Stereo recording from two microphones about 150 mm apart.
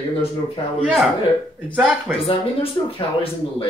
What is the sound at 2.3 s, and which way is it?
Speech, 35° left (ahead or behind).